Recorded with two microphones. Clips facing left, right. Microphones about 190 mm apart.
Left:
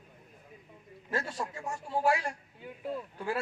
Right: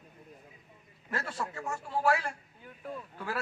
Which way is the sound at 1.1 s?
25° left (ahead or behind).